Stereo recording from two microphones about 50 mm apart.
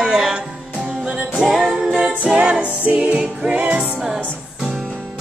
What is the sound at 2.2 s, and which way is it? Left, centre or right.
Music, right.